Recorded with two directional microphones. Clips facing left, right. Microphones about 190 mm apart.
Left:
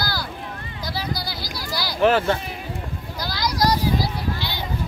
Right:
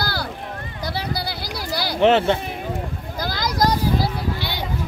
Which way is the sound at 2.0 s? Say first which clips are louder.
Right 2 dB; 25° right (ahead or behind).